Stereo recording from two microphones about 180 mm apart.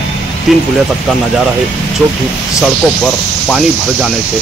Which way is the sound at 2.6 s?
Centre (ahead or behind).